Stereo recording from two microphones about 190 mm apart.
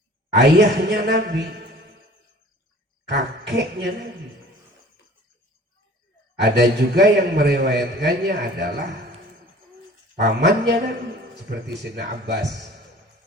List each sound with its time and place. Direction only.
0.5 s a man's voice: 65° right (ahead or behind)
3.1 s a woman's voice: 60° right (ahead or behind)
6.3 s a man's voice: 60° right (ahead or behind)
10.2 s a man's voice: 60° right (ahead or behind)